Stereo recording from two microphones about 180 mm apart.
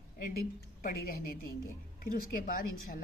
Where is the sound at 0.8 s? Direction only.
55° left (ahead or behind).